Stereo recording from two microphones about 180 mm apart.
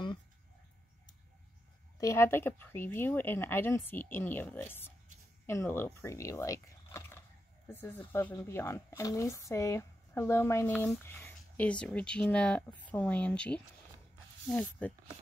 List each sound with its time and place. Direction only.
2.0 s a woman's voice: 15° left (ahead or behind)